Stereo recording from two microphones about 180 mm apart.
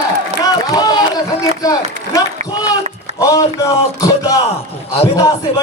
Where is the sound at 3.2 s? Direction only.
20° left (ahead or behind).